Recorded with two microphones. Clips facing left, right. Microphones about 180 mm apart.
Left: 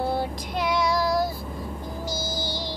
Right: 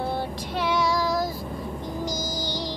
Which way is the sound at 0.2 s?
10° left (ahead or behind).